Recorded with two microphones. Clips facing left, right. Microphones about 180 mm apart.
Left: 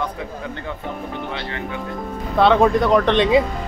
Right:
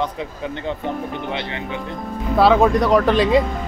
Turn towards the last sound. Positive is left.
turn(degrees=0)  # may be behind; listen again after turning